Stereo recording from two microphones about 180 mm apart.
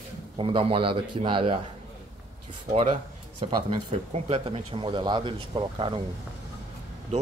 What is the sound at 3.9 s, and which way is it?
Speech, 35° right (ahead or behind).